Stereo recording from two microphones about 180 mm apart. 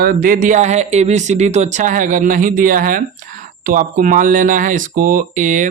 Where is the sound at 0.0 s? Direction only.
50° right (ahead or behind).